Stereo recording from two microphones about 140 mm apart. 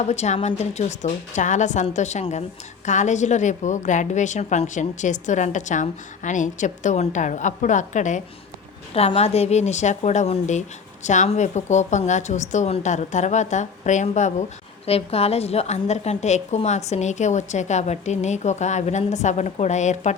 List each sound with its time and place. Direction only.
0.0 s a woman's voice: 50° left (ahead or behind)
8.9 s a woman's voice: 45° left (ahead or behind)